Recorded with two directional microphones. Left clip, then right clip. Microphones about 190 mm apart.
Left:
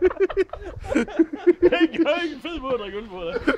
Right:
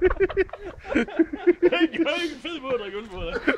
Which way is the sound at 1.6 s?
45° left (ahead or behind).